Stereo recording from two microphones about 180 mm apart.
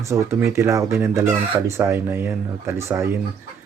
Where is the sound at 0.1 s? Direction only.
15° right (ahead or behind).